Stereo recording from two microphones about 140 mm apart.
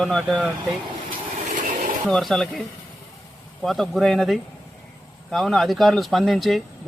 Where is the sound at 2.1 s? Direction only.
Centre (ahead or behind).